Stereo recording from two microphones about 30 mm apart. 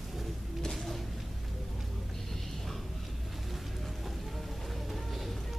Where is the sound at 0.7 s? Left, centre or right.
Centre.